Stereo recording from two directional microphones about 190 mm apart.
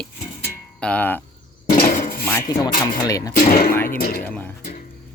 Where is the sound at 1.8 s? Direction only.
45° left (ahead or behind).